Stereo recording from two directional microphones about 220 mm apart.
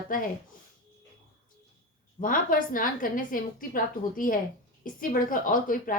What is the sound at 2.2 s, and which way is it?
A woman's voice, 40° left (ahead or behind).